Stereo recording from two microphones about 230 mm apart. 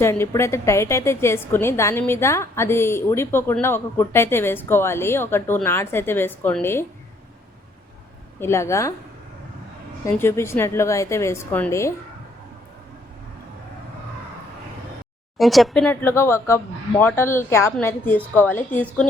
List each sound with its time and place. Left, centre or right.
0.0 s a woman's voice: centre
8.4 s a woman's voice: centre
10.1 s a woman's voice: centre
15.4 s a woman's voice: centre